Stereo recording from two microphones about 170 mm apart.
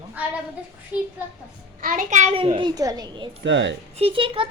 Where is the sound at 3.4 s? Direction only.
90° right.